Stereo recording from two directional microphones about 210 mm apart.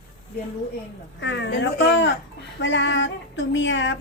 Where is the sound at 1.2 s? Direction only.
60° left (ahead or behind).